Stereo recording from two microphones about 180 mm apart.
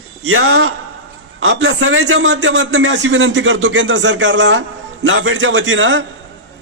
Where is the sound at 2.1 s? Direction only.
90° right.